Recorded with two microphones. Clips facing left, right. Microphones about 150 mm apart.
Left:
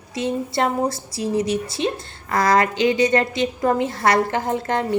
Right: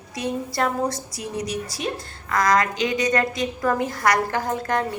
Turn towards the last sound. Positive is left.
turn(degrees=25)  # may be behind; listen again after turning